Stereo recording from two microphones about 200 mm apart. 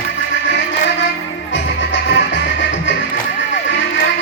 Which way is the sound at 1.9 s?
60° left (ahead or behind).